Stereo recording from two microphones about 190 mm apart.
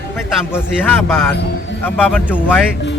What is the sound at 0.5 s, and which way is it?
Speech, 10° left (ahead or behind).